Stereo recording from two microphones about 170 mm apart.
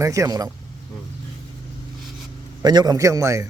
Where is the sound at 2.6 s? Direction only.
25° right (ahead or behind).